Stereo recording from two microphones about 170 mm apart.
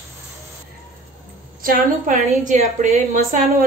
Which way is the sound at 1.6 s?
55° right (ahead or behind).